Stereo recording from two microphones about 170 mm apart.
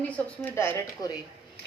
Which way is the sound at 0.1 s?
15° left (ahead or behind).